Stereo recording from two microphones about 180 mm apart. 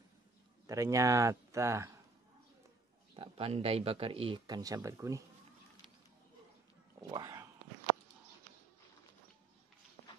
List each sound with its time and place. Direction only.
0.7 s speech: 15° right (ahead or behind)
3.2 s speech: 30° right (ahead or behind)
7.0 s speech: 20° right (ahead or behind)